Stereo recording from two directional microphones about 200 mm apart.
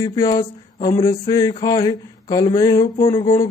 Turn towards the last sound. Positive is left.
turn(degrees=15)  # may be behind; listen again after turning